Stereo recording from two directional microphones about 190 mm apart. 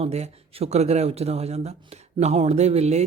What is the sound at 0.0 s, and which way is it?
Speech, 35° right (ahead or behind).